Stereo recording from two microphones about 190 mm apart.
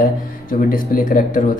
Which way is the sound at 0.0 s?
50° left (ahead or behind).